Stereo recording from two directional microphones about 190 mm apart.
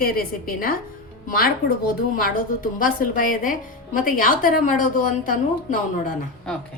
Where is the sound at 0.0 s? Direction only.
50° left (ahead or behind).